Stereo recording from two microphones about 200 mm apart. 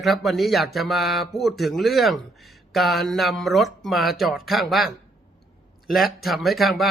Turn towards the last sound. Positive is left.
turn(degrees=0)  # may be behind; listen again after turning